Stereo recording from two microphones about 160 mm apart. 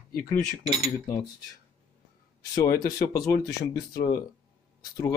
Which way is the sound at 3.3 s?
70° left (ahead or behind).